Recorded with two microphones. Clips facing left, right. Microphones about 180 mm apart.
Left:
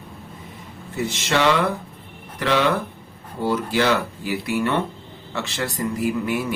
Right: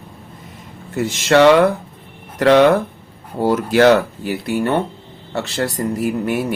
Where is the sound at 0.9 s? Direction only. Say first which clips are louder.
Right 9 dB; 50° right (ahead or behind).